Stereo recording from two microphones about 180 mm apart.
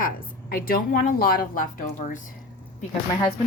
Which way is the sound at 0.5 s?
55° left (ahead or behind).